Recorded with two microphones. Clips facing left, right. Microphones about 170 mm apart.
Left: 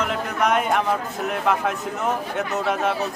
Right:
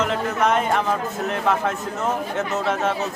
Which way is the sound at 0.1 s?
Centre (ahead or behind).